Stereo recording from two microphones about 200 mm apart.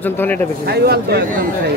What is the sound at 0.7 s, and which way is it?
Speech, 50° right (ahead or behind).